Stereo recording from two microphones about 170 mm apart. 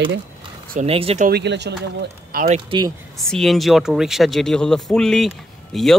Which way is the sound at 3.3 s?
Centre (ahead or behind).